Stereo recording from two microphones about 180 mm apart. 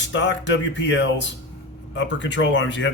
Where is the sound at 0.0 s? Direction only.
80° left.